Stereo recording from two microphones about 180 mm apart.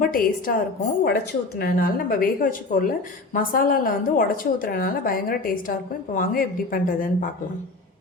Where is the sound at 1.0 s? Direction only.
65° left (ahead or behind).